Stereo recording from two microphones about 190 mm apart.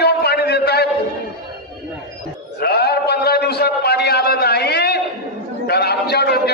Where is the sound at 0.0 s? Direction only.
60° left (ahead or behind).